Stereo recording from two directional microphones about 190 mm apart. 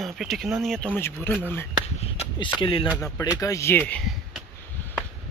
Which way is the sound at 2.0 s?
30° left (ahead or behind).